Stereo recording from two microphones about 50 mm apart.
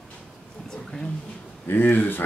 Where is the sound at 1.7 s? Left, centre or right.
Left.